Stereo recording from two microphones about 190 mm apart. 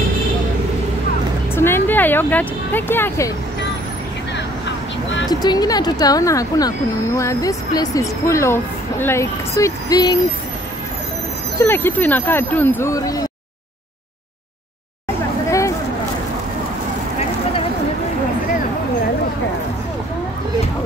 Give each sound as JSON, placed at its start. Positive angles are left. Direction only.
{"t": 1.5, "sound": "speech", "side_deg": 10}
{"t": 5.3, "sound": "a woman's voice", "side_deg": 20}
{"t": 11.5, "sound": "a woman's voice", "side_deg": 10}